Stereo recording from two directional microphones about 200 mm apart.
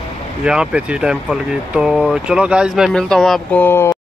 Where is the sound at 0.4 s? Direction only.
5° right (ahead or behind).